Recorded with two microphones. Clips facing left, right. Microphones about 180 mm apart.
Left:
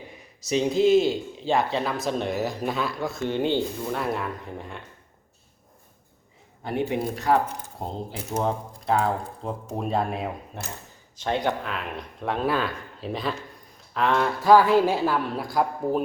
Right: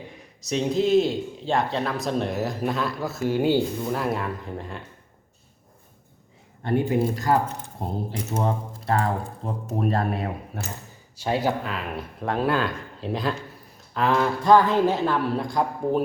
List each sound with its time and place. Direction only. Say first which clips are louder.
0.4 s speech: left 2 dB; centre (ahead or behind)
6.7 s speech: right 4 dB; centre (ahead or behind)